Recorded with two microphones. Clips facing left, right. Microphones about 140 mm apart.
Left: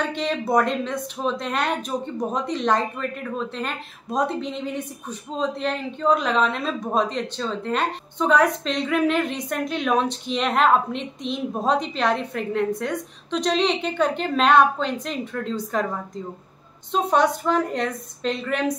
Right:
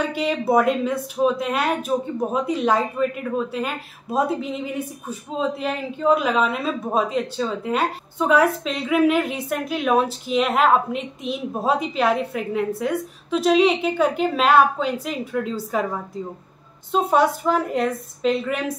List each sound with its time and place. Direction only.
0.0 s a woman's voice: 5° right (ahead or behind)
16.9 s speech: 5° right (ahead or behind)